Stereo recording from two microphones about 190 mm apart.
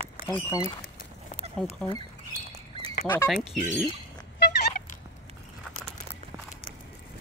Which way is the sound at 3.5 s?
Centre (ahead or behind).